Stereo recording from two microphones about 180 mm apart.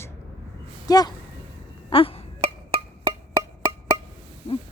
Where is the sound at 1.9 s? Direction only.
30° left (ahead or behind).